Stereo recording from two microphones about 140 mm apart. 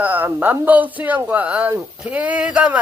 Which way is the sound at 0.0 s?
10° right (ahead or behind).